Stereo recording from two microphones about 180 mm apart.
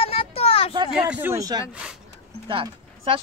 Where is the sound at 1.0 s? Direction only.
10° right (ahead or behind).